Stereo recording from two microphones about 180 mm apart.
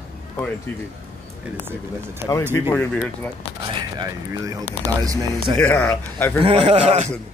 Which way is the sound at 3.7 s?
20° right (ahead or behind).